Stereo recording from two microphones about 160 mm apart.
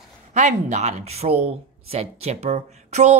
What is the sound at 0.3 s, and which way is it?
Speech, 50° right (ahead or behind).